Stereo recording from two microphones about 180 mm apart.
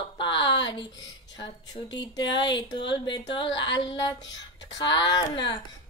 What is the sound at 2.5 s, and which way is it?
Speech, 25° left (ahead or behind).